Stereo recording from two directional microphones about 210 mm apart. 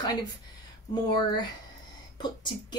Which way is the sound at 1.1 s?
20° left (ahead or behind).